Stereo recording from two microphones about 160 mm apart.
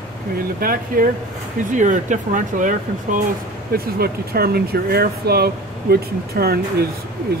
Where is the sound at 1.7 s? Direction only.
50° right (ahead or behind).